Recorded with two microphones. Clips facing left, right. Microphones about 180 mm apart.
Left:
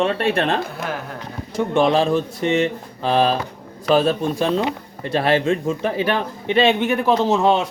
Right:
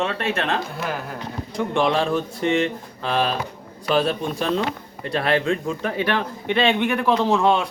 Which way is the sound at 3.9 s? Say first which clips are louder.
Left 4 dB; 45° left (ahead or behind).